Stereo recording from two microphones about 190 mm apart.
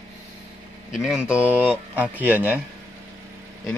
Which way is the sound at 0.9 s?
5° right (ahead or behind).